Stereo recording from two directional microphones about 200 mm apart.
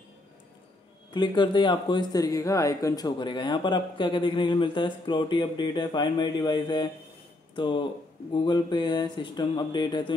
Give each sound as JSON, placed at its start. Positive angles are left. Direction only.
{"t": 1.1, "sound": "speech", "side_deg": 20}